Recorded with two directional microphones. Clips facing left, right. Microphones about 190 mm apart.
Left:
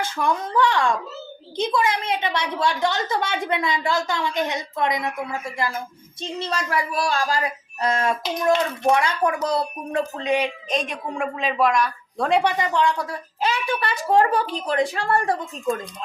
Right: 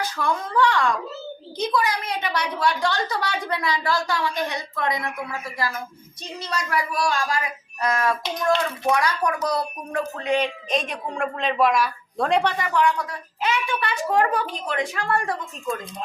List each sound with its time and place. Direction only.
0.0 s a woman's voice: 20° left (ahead or behind)
10.7 s speech: centre (ahead or behind)
12.4 s a woman's voice: 15° left (ahead or behind); by 15.4 s 30° left (ahead or behind)